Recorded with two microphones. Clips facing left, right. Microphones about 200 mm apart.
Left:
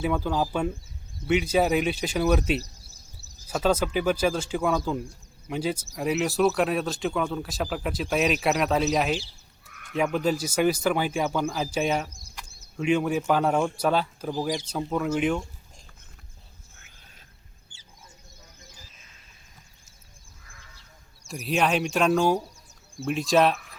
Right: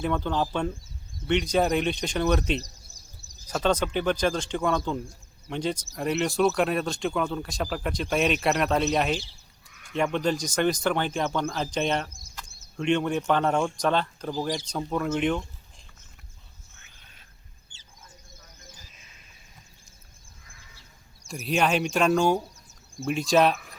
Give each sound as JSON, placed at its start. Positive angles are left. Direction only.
{"t": 0.0, "sound": "speech", "side_deg": 5}
{"t": 9.6, "sound": "sheep", "side_deg": 60}
{"t": 9.9, "sound": "speech", "side_deg": 5}
{"t": 21.2, "sound": "speech", "side_deg": 0}